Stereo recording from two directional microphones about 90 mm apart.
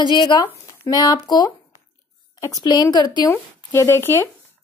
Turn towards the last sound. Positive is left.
turn(degrees=25)  # may be behind; listen again after turning